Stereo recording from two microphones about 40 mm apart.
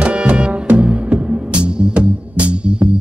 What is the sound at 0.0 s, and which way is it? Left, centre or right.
Music, right.